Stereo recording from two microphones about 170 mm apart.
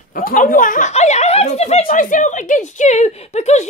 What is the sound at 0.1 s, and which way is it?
A child's voice, 55° left (ahead or behind).